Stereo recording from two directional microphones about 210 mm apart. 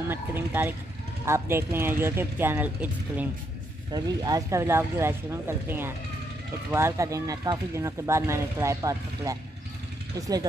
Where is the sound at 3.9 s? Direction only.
15° right (ahead or behind).